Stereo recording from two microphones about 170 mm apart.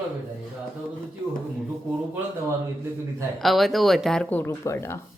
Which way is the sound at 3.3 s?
Centre (ahead or behind).